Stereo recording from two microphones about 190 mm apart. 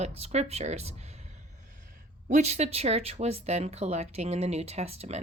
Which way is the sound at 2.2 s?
35° right (ahead or behind).